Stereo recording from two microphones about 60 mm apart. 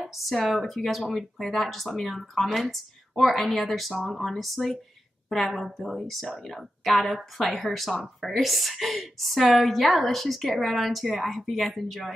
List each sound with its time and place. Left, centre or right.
0.0 s a woman's voice: centre